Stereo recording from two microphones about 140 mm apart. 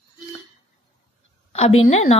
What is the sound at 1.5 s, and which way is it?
Speech, 50° left (ahead or behind).